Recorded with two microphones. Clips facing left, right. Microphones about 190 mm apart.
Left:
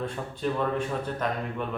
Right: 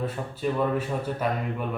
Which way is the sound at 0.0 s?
5° right (ahead or behind).